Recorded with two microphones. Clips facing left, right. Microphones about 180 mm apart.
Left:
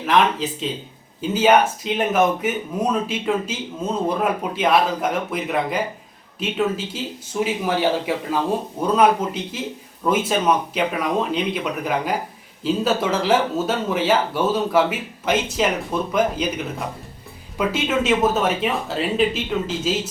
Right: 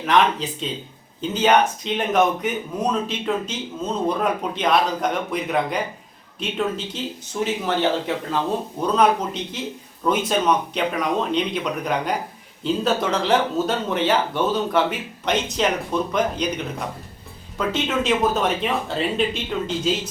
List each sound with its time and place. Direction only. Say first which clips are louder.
0.0 s speech: even; 5° left (ahead or behind)